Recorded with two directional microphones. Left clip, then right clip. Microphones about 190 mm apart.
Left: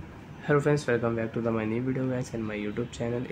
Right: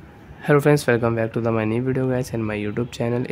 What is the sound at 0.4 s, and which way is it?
Speech, 50° right (ahead or behind).